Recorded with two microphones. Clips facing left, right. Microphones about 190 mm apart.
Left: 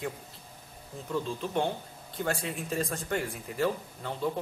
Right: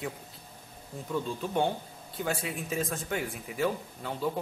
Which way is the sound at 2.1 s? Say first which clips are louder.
Left 1 dB; 5° right (ahead or behind).